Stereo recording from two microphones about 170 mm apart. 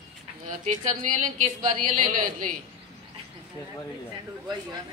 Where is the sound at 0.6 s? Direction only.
45° right (ahead or behind).